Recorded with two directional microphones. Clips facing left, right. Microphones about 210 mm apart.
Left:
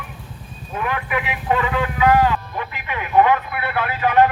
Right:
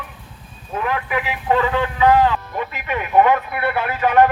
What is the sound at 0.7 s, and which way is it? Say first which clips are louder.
Speech: right 2 dB; 35° right (ahead or behind).